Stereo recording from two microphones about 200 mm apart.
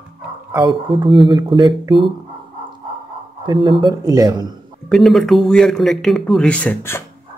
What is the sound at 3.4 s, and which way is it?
Speech, 25° right (ahead or behind).